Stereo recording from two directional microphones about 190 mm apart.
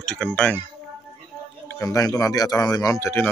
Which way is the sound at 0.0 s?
5° left (ahead or behind).